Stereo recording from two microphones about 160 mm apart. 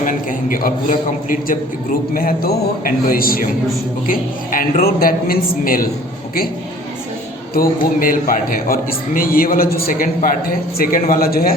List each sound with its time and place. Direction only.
0.0 s a man's voice: 55° left (ahead or behind)
7.5 s a man's voice: 65° left (ahead or behind)